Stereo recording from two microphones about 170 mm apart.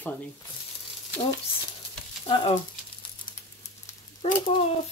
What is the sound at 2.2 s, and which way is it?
Speech, 30° left (ahead or behind).